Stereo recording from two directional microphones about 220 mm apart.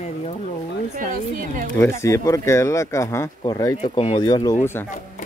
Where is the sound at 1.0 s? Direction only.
35° right (ahead or behind).